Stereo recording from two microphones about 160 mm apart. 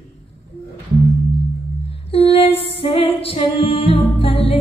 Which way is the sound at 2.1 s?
35° left (ahead or behind).